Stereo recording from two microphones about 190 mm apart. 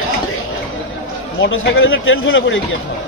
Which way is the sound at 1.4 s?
90° left.